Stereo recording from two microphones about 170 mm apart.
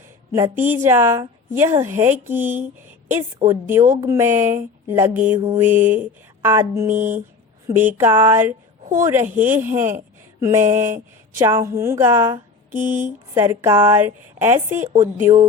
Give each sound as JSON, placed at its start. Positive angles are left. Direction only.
{"t": 0.3, "sound": "mantra", "side_deg": -15}
{"t": 12.9, "sound": "speech", "side_deg": -45}
{"t": 13.3, "sound": "mantra", "side_deg": -15}